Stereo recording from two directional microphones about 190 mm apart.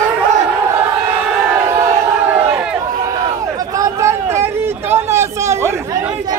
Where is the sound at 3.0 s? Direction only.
20° right (ahead or behind).